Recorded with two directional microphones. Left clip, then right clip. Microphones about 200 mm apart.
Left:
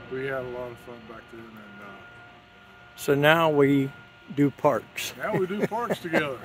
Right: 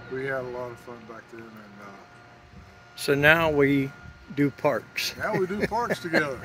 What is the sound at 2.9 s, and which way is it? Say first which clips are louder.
Speech: right 1 dB; 15° left (ahead or behind).